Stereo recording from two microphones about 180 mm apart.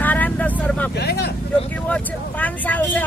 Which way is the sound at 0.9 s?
65° left (ahead or behind).